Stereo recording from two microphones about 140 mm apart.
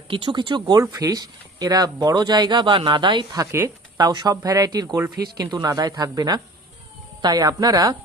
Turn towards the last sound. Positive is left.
turn(degrees=-25)  # may be behind; listen again after turning